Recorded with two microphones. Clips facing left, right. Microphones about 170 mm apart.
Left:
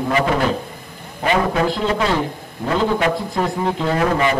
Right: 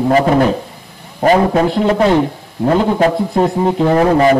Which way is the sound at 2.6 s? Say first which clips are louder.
Right 6 dB; 35° right (ahead or behind).